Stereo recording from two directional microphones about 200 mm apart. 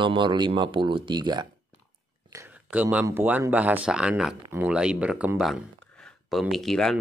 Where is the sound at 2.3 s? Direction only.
10° right (ahead or behind).